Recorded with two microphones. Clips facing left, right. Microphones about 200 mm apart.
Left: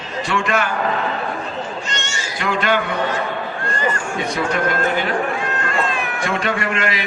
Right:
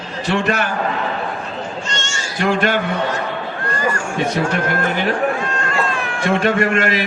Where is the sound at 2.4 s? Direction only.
45° right (ahead or behind).